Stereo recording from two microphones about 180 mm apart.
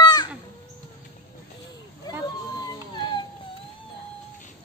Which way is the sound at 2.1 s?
20° left (ahead or behind).